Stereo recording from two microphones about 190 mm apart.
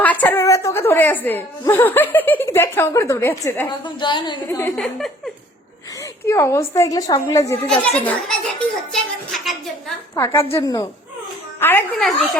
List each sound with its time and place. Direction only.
0.0 s a woman's voice: 10° left (ahead or behind)
3.7 s a woman's voice: 25° left (ahead or behind)
4.4 s a woman's voice: 10° left (ahead or behind)
4.8 s a woman's voice: centre (ahead or behind)
6.0 s a woman's voice: 15° left (ahead or behind)
7.5 s a woman's voice: 5° left (ahead or behind)
10.2 s a woman's voice: 15° left (ahead or behind); by 12.4 s centre (ahead or behind)